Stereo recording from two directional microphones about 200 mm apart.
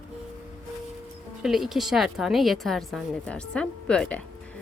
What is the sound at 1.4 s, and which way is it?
A woman's voice, centre (ahead or behind).